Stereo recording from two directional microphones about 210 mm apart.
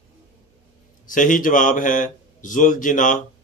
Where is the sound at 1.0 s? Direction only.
40° left (ahead or behind).